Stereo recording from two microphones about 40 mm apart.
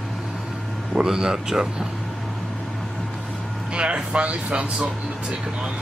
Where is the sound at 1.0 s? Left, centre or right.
Centre.